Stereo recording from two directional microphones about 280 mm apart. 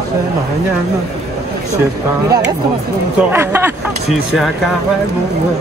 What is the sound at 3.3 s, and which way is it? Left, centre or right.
Speech, centre.